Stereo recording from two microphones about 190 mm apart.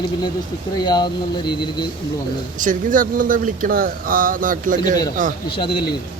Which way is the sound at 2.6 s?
45° right (ahead or behind).